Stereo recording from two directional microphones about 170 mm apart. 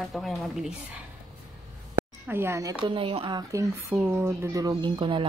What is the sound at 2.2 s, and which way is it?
Speech, 15° right (ahead or behind).